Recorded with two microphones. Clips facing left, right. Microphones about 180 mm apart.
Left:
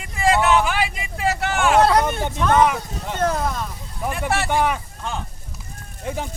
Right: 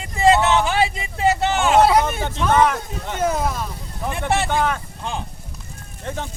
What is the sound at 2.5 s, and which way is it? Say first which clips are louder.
Speech: even; 10° left (ahead or behind).